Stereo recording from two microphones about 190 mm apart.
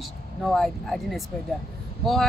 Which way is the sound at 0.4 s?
Centre (ahead or behind).